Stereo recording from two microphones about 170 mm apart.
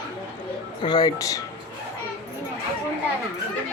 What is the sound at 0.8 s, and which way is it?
Speech, 25° left (ahead or behind).